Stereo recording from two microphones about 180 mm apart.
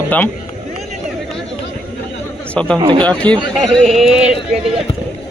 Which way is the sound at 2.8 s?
25° right (ahead or behind).